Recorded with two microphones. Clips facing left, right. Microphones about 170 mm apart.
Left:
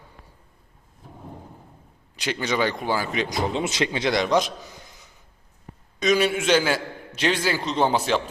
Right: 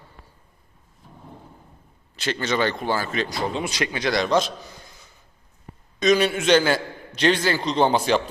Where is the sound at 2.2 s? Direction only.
10° left (ahead or behind).